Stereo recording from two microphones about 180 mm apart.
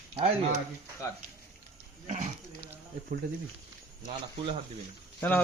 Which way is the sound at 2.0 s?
40° right (ahead or behind).